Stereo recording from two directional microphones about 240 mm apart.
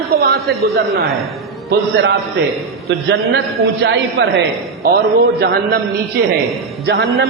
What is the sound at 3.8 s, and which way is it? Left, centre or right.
Speech, right.